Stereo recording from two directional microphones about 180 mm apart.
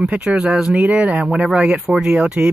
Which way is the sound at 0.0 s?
5° right (ahead or behind).